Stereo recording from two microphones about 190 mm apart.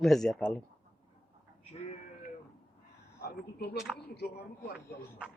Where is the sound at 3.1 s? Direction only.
55° left (ahead or behind).